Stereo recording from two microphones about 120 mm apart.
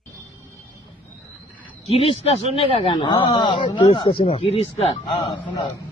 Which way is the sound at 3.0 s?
40° left (ahead or behind).